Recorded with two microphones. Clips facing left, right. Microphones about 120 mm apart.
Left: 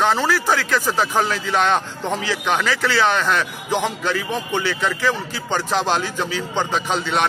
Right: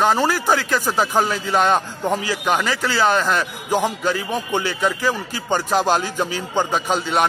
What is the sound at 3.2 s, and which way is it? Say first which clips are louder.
A man's voice: even; 10° right (ahead or behind).